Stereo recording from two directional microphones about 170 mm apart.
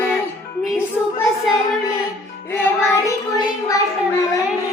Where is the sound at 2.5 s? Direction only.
15° left (ahead or behind).